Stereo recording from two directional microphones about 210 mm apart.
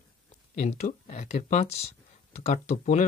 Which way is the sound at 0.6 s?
35° left (ahead or behind).